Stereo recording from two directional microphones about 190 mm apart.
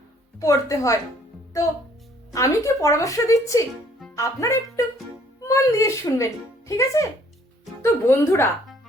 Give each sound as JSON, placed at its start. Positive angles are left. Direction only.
{"t": 0.3, "sound": "speech", "side_deg": 15}
{"t": 2.3, "sound": "speech", "side_deg": 15}